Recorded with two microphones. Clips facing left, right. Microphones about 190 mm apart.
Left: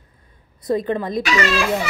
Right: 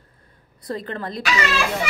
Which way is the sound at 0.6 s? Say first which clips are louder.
Left 8 dB; 20° left (ahead or behind).